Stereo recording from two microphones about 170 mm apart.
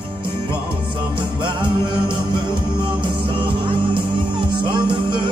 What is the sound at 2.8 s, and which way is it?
Music, 30° right (ahead or behind).